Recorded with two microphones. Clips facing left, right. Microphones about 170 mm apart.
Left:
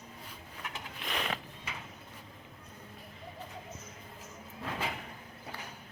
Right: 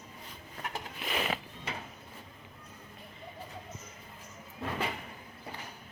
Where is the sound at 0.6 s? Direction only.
40° right (ahead or behind).